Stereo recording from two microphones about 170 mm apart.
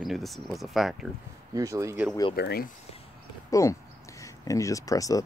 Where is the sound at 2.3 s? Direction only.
70° left (ahead or behind).